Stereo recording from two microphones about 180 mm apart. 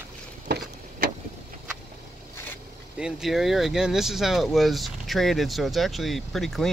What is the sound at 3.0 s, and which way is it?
Speech, 5° right (ahead or behind).